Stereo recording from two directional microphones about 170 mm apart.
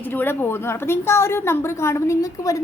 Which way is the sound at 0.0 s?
10° left (ahead or behind).